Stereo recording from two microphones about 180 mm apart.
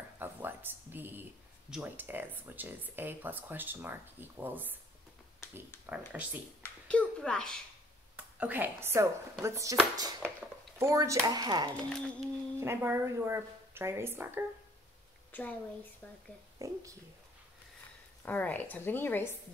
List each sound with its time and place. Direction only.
0.2 s a sound: 10° right (ahead or behind)
1.7 s speech: 10° right (ahead or behind)
5.4 s a sound: 15° left (ahead or behind)
5.9 s speech: 10° right (ahead or behind)
6.6 s a sound: 5° left (ahead or behind)
8.2 s speech: 10° right (ahead or behind)
15.3 s a woman's voice: 10° left (ahead or behind)
16.5 s speech: 20° right (ahead or behind)
18.2 s a woman's voice: 10° left (ahead or behind)